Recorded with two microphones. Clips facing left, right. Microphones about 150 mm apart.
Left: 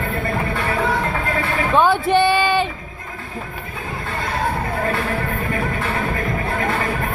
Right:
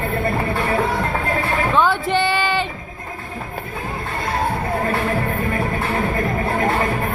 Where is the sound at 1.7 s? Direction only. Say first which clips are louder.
Left 4 dB; 15° left (ahead or behind).